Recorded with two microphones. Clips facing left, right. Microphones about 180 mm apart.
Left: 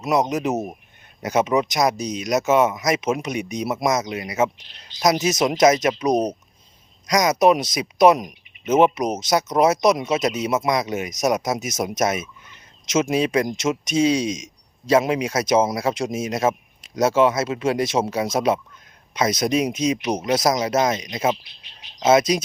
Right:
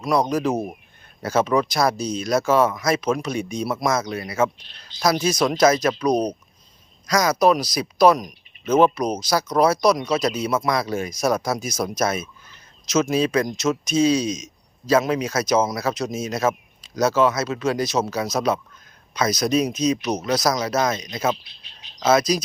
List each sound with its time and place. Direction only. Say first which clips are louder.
0.0 s speech: even; 20° left (ahead or behind)